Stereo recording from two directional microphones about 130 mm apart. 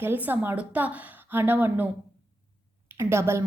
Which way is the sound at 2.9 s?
20° right (ahead or behind).